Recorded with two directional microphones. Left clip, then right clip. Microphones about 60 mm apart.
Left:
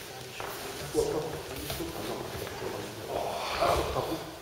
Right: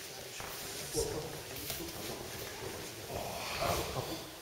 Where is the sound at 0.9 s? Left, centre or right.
Left.